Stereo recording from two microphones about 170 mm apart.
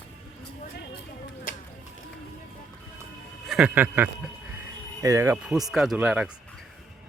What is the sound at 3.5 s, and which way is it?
Speech, 5° right (ahead or behind).